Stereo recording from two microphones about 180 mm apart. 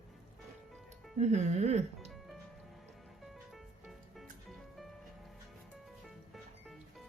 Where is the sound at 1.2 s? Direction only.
40° right (ahead or behind).